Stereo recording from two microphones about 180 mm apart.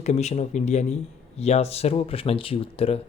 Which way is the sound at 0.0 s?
40° left (ahead or behind).